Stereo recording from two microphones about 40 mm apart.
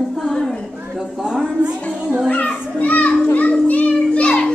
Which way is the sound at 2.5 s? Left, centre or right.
Left.